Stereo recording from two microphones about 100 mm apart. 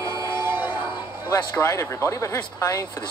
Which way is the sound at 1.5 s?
30° left (ahead or behind).